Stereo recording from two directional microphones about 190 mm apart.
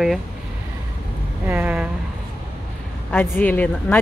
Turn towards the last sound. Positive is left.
turn(degrees=10)  # may be behind; listen again after turning